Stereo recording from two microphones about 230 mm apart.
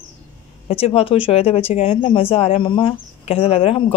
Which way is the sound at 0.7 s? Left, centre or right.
Left.